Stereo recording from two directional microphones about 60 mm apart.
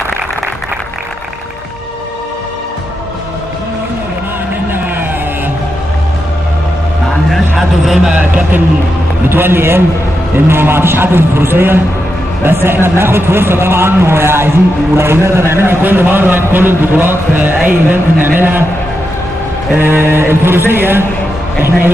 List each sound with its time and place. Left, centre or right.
7.3 s a sound: centre
9.3 s a man's voice: right
19.7 s a man's voice: right